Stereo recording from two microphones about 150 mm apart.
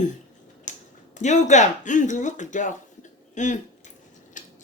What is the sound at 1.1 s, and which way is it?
A woman's voice, 50° left (ahead or behind).